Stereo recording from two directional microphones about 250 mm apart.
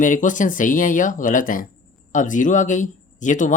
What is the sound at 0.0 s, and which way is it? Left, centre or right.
Speech, left.